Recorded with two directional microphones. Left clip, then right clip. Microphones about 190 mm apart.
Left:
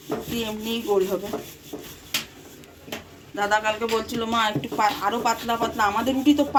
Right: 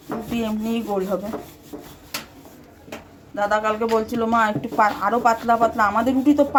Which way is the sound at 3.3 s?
50° right (ahead or behind).